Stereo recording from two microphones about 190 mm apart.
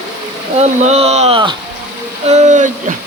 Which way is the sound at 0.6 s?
35° right (ahead or behind).